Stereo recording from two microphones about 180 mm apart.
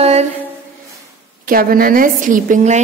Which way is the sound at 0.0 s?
35° right (ahead or behind).